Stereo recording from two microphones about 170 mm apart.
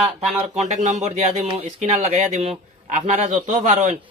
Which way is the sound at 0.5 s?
45° right (ahead or behind).